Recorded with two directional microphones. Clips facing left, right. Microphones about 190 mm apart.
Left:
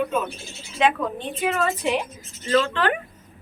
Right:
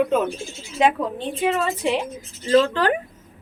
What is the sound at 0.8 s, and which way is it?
A woman's voice, 35° right (ahead or behind).